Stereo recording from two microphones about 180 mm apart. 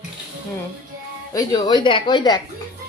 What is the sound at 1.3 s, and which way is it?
Speech, 25° left (ahead or behind).